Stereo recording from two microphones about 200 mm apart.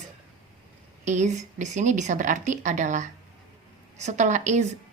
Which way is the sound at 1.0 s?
35° right (ahead or behind).